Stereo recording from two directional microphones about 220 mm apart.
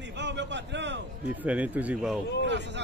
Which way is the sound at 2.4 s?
55° right (ahead or behind).